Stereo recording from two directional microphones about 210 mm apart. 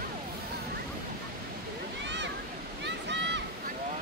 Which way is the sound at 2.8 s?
55° right (ahead or behind).